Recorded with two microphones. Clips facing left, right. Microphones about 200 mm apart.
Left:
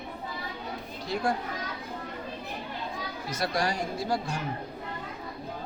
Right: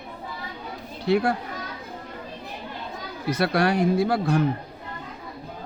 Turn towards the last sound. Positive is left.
turn(degrees=-60)  # may be behind; listen again after turning